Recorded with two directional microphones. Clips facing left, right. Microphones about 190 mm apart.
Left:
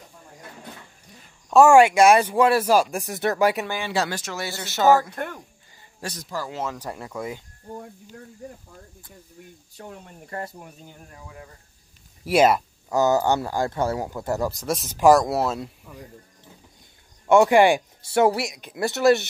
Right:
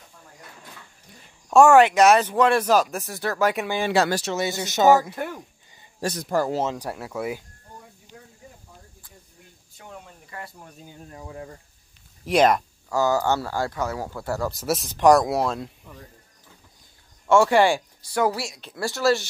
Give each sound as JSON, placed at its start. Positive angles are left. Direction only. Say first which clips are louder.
{"t": 1.5, "sound": "speech", "louder": "left 1 dB", "side_deg": 5}
{"t": 4.3, "sound": "speech", "louder": "right 6 dB", "side_deg": -20}
{"t": 5.1, "sound": "speech", "louder": "right 1 dB", "side_deg": -5}
{"t": 6.1, "sound": "speech", "louder": "right 9 dB", "side_deg": -55}
{"t": 6.6, "sound": "speech", "louder": "right 4 dB", "side_deg": -20}
{"t": 6.9, "sound": "speech", "louder": "right 2 dB", "side_deg": -5}
{"t": 9.8, "sound": "speech", "louder": "left 3 dB", "side_deg": 40}
{"t": 11.1, "sound": "speech", "louder": "right 8 dB", "side_deg": -35}
{"t": 12.3, "sound": "speech", "louder": "left 1 dB", "side_deg": 5}
{"t": 12.9, "sound": "speech", "louder": "left 2 dB", "side_deg": 20}
{"t": 13.7, "sound": "speech", "louder": "left 4 dB", "side_deg": 30}
{"t": 14.0, "sound": "speech", "louder": "left 2 dB", "side_deg": 15}
{"t": 14.5, "sound": "speech", "louder": "right 1 dB", "side_deg": 0}
{"t": 17.3, "sound": "speech", "louder": "left 2 dB", "side_deg": 15}